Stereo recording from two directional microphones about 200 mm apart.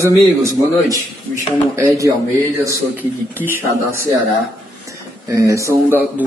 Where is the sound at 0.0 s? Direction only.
15° right (ahead or behind).